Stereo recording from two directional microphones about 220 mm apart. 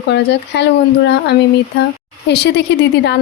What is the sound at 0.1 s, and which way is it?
A woman's voice, 50° left (ahead or behind).